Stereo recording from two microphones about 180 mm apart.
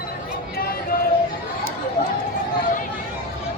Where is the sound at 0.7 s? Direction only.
55° left (ahead or behind).